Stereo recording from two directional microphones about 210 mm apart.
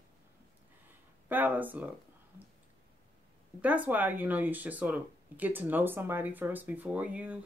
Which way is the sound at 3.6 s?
5° right (ahead or behind).